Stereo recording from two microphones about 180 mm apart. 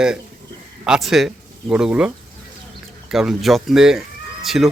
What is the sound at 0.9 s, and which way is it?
Speech, centre (ahead or behind).